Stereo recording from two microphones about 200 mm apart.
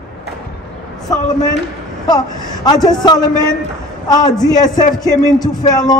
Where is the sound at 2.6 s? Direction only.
20° left (ahead or behind).